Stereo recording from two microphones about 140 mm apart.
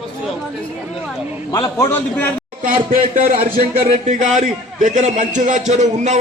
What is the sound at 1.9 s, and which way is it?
Speech, 15° left (ahead or behind).